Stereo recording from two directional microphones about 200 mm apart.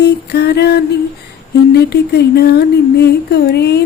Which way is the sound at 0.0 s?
55° left (ahead or behind).